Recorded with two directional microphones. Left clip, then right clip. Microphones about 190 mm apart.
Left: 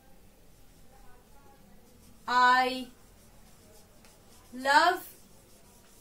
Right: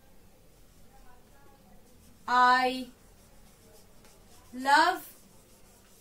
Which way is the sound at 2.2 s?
15° left (ahead or behind).